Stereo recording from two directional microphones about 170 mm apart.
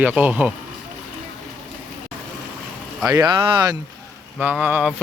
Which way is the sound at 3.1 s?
20° right (ahead or behind).